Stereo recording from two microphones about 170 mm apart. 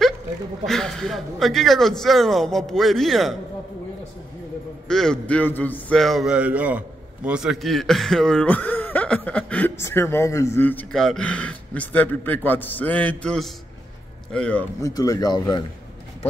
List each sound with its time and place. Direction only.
0.7 s a man's voice: centre (ahead or behind)
4.8 s a man's voice: 5° left (ahead or behind)
14.8 s speech: 20° left (ahead or behind)